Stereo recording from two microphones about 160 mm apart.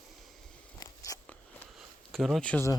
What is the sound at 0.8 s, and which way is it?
Biting, 20° left (ahead or behind).